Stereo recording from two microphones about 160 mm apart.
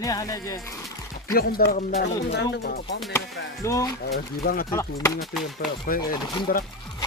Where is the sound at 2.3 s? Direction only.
90° left.